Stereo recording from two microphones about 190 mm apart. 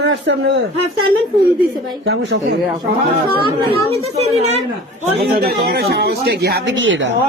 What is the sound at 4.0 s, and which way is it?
Speech, 35° right (ahead or behind).